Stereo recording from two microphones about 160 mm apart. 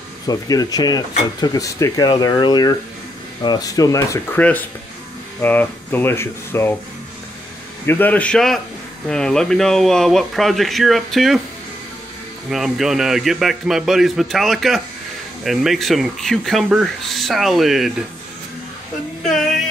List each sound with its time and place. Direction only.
0.3 s speech: 25° left (ahead or behind)
7.8 s speech: 10° left (ahead or behind)
12.4 s speech: centre (ahead or behind)
19.2 s music: centre (ahead or behind)